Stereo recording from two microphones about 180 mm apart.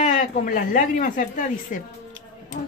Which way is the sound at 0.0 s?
45° left (ahead or behind).